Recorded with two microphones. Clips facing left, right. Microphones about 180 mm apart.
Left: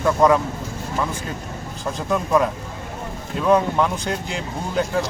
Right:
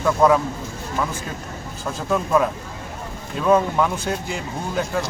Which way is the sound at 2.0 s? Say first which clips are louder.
Even; centre (ahead or behind).